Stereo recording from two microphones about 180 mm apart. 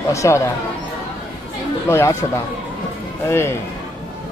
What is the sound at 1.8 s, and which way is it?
Speech, 15° left (ahead or behind).